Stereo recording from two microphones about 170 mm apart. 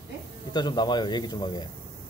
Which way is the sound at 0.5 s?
25° left (ahead or behind).